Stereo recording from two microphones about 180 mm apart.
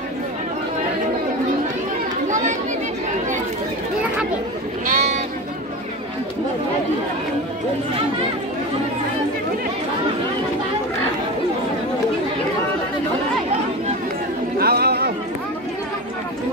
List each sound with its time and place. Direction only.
4.8 s sheep: 40° right (ahead or behind)
14.6 s chatter: 60° right (ahead or behind)